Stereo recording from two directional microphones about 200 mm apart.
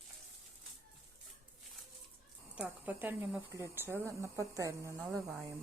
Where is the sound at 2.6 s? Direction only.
10° right (ahead or behind).